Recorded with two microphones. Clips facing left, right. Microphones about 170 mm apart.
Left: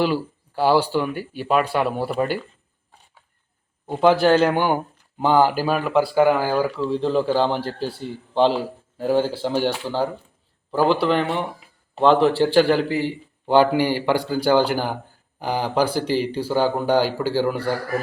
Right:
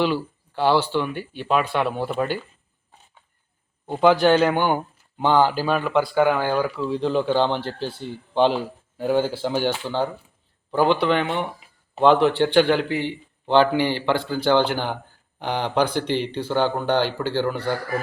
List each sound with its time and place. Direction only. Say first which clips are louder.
0.0 s a man's voice: left 1 dB; 5° left (ahead or behind)
3.8 s a man's voice: even; centre (ahead or behind)